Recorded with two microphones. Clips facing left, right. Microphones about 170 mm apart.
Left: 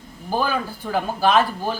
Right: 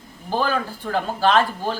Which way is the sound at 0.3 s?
10° left (ahead or behind).